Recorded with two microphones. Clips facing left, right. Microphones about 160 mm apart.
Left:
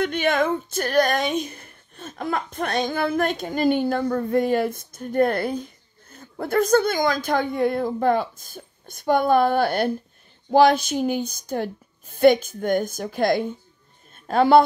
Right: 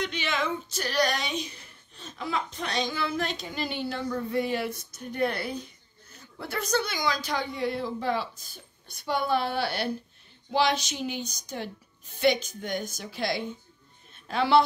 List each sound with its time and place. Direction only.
0.0 s a man's voice: 50° left (ahead or behind)